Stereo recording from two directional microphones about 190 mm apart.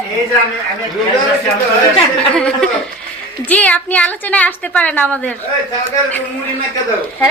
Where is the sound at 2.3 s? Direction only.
5° left (ahead or behind).